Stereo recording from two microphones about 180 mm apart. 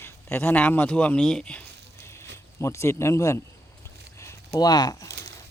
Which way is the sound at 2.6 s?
15° left (ahead or behind).